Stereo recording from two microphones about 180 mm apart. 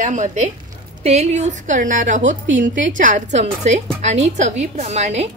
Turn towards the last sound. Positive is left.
turn(degrees=-35)  # may be behind; listen again after turning